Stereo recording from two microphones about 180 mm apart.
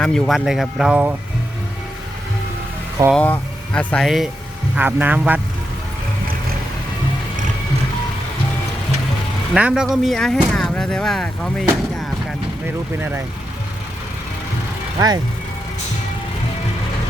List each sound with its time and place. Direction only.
0.0 s speech: 5° left (ahead or behind)
3.1 s speech: 10° left (ahead or behind); by 5.4 s 10° right (ahead or behind)
9.6 s speech: 5° right (ahead or behind)
12.6 s speech: 15° right (ahead or behind)
14.9 s speech: 20° right (ahead or behind)